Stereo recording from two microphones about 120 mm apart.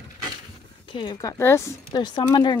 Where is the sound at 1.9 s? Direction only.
35° left (ahead or behind).